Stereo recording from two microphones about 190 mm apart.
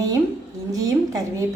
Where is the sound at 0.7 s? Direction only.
15° right (ahead or behind).